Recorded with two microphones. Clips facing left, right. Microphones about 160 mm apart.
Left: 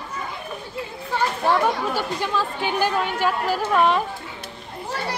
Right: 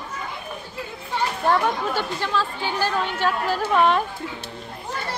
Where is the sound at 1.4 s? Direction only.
10° left (ahead or behind).